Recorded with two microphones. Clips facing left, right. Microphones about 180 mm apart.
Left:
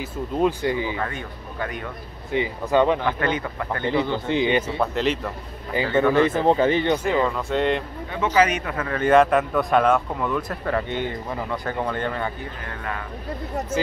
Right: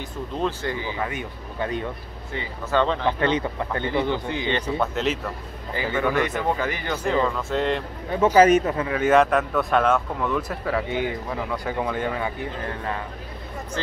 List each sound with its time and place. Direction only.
0.0 s speech: 10° left (ahead or behind)
0.9 s speech: 15° right (ahead or behind)
2.3 s speech: 15° left (ahead or behind)
3.1 s speech: 25° right (ahead or behind)
4.1 s speech: 15° left (ahead or behind)
4.6 s speech: centre (ahead or behind)
5.9 s speech: 30° left (ahead or behind)
7.1 s speech: 5° left (ahead or behind)
8.4 s speech: 45° right (ahead or behind)
8.8 s speech: 5° right (ahead or behind)